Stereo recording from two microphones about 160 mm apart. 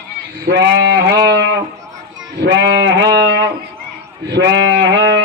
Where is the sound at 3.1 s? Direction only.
90° right.